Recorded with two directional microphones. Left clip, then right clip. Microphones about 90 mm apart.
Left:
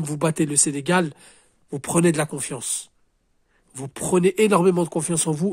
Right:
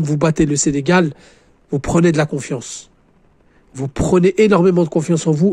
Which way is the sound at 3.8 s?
40° right (ahead or behind).